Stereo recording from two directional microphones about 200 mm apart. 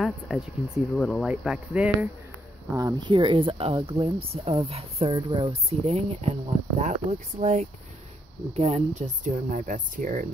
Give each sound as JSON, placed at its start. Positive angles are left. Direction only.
{"t": 0.0, "sound": "speech", "side_deg": 0}
{"t": 2.7, "sound": "speech", "side_deg": -20}